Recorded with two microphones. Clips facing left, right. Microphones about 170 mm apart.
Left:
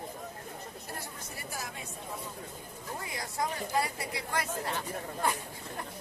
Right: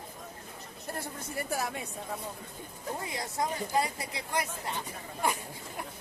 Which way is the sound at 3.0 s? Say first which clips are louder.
Right 1 dB; 25° right (ahead or behind).